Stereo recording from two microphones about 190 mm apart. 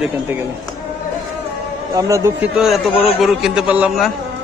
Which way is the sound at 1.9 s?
15° right (ahead or behind).